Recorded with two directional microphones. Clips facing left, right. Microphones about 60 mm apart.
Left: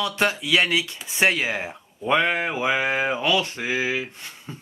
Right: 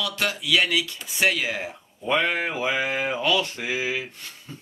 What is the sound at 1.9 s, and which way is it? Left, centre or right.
Speech, centre.